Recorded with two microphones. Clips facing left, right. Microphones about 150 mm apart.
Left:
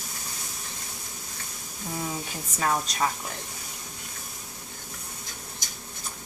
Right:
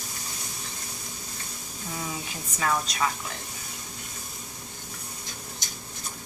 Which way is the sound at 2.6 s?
40° left (ahead or behind).